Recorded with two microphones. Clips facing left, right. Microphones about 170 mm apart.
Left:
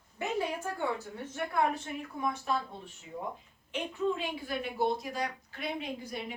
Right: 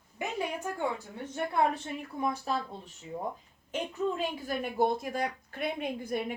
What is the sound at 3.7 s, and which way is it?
A woman's voice, 45° right (ahead or behind).